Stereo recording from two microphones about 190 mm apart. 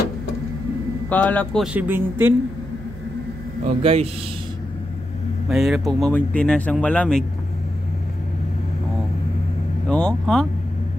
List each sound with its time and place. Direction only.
1.0 s speech: 10° left (ahead or behind); by 2.3 s 10° right (ahead or behind)
3.6 s speech: 35° right (ahead or behind)
5.5 s speech: centre (ahead or behind)
9.8 s speech: 5° left (ahead or behind)